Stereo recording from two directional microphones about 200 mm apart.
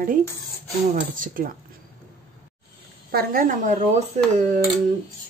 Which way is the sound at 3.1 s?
45° right (ahead or behind).